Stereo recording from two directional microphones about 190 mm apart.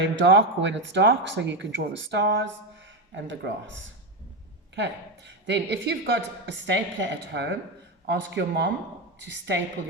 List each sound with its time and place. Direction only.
0.0 s a woman's voice: 70° right (ahead or behind)
4.7 s a woman's voice: 65° right (ahead or behind)